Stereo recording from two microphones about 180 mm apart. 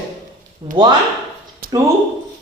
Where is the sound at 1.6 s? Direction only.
55° right (ahead or behind).